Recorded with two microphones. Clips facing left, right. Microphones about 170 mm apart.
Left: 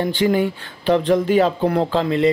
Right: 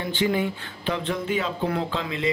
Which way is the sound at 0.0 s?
40° left (ahead or behind).